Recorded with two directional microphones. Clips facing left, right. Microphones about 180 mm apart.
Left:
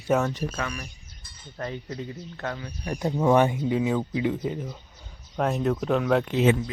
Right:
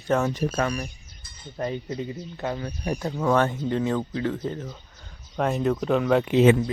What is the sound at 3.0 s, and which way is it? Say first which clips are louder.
Speech: left 3 dB; 20° left (ahead or behind).